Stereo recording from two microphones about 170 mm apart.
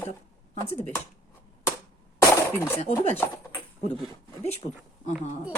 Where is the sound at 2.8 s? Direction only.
35° left (ahead or behind).